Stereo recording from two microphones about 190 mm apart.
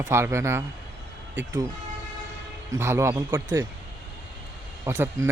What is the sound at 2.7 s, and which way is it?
Speech, 15° right (ahead or behind).